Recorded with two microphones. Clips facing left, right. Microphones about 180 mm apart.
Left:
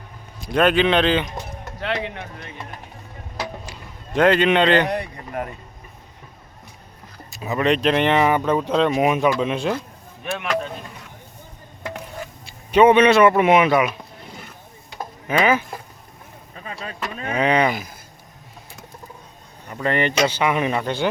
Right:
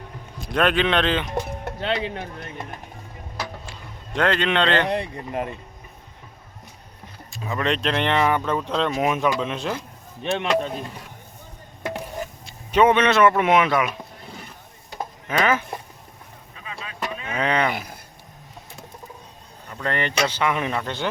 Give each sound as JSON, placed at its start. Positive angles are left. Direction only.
{"t": 0.4, "sound": "speech", "side_deg": 0}
{"t": 1.8, "sound": "speech", "side_deg": -30}
{"t": 4.2, "sound": "speech", "side_deg": 10}
{"t": 4.9, "sound": "speech", "side_deg": -25}
{"t": 7.4, "sound": "speech", "side_deg": 5}
{"t": 10.3, "sound": "speech", "side_deg": -25}
{"t": 12.5, "sound": "speech", "side_deg": 5}
{"t": 15.3, "sound": "speech", "side_deg": 10}
{"t": 17.3, "sound": "speech", "side_deg": 10}
{"t": 17.7, "sound": "speech", "side_deg": -60}
{"t": 19.7, "sound": "speech", "side_deg": 10}